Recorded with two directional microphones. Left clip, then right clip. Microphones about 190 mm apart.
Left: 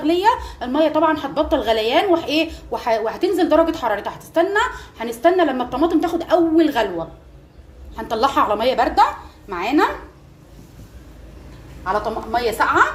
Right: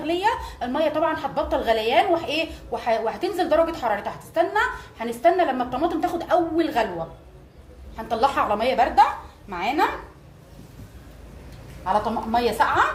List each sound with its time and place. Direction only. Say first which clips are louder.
0.0 s a woman's voice: left 6 dB; 40° left (ahead or behind)
7.9 s a woman's voice: left 4 dB; 40° left (ahead or behind)
12.3 s a woman's voice: left 3 dB; 35° left (ahead or behind)